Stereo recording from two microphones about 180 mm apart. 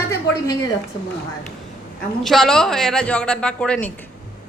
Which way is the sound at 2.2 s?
Centre (ahead or behind).